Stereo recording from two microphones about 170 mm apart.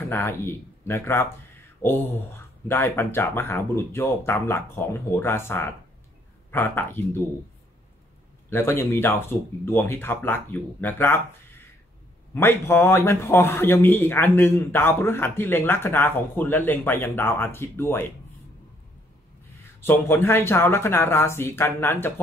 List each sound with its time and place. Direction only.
0.1 s speech: 10° left (ahead or behind)
8.5 s speech: 15° left (ahead or behind)
12.4 s speech: 15° left (ahead or behind)
19.8 s speech: 15° left (ahead or behind)